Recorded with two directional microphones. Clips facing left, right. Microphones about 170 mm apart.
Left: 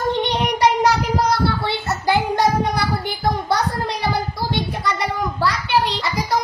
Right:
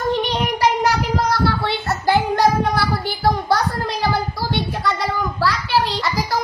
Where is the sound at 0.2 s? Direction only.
25° left (ahead or behind).